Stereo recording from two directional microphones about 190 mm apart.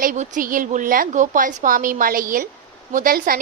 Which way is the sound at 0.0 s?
40° right (ahead or behind).